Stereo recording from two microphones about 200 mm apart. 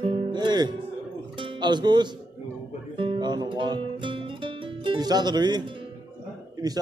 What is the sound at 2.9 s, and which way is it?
Guitar, 25° right (ahead or behind).